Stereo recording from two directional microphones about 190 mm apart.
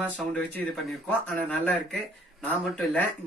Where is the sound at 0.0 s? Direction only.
5° left (ahead or behind).